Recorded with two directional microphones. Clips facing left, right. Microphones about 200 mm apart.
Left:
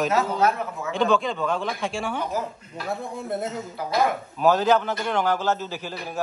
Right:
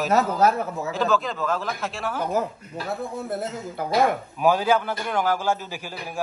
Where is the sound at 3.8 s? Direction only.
55° right (ahead or behind).